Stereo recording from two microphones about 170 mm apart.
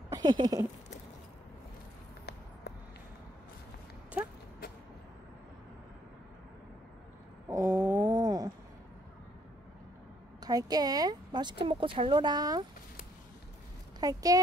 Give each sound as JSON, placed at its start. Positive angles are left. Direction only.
{"t": 0.1, "sound": "speech", "side_deg": -25}
{"t": 7.4, "sound": "a sound", "side_deg": -20}
{"t": 10.4, "sound": "speech", "side_deg": -20}
{"t": 13.9, "sound": "speech", "side_deg": -20}